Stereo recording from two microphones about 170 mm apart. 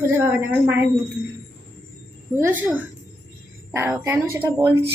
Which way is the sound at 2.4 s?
10° right (ahead or behind).